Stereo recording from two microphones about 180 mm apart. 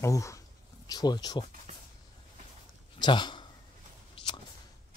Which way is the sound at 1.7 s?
40° right (ahead or behind).